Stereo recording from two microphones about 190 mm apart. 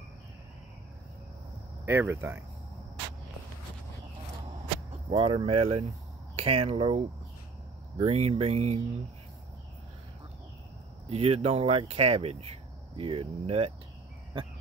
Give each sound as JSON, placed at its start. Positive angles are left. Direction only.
{"t": 1.9, "sound": "speech", "side_deg": -10}
{"t": 5.1, "sound": "speech", "side_deg": -25}
{"t": 11.1, "sound": "speech", "side_deg": -30}